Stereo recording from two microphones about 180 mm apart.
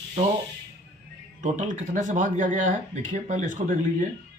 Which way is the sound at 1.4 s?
45° right (ahead or behind).